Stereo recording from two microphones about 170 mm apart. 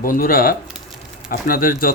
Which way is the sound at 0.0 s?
55° left (ahead or behind).